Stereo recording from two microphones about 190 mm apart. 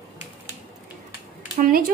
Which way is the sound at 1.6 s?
45° right (ahead or behind).